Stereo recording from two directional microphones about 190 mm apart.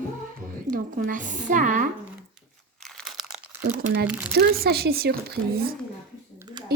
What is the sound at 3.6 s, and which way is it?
A woman's voice, 55° right (ahead or behind).